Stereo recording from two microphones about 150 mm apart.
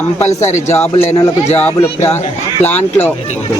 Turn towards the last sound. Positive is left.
turn(degrees=10)  # may be behind; listen again after turning